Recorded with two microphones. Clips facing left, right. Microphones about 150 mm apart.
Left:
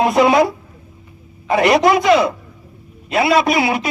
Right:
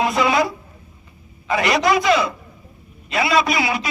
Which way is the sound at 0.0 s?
50° left (ahead or behind).